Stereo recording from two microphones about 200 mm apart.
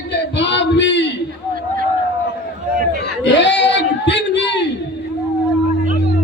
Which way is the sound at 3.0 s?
65° left (ahead or behind).